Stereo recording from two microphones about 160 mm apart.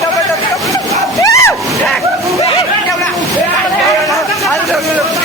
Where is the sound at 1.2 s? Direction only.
20° left (ahead or behind).